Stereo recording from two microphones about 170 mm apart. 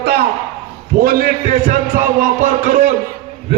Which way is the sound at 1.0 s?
60° right (ahead or behind).